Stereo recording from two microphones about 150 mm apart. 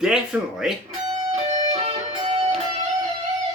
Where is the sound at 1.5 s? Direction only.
50° right (ahead or behind).